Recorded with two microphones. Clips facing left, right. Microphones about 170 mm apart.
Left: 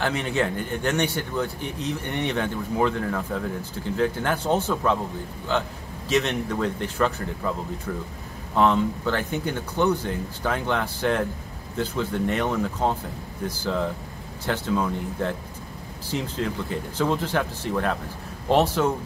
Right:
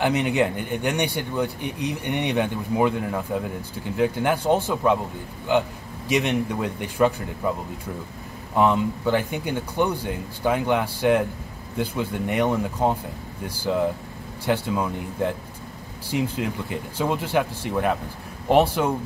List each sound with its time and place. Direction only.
0.0 s speech: 15° right (ahead or behind)
8.5 s speech: 15° right (ahead or behind)
14.4 s speech: 10° right (ahead or behind)